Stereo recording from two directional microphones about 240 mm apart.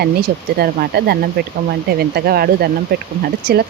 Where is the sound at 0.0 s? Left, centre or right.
Right.